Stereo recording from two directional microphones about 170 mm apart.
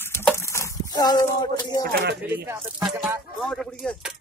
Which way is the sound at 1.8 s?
75° right (ahead or behind).